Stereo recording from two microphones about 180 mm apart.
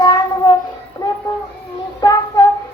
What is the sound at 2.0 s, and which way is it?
Child singing, 20° left (ahead or behind).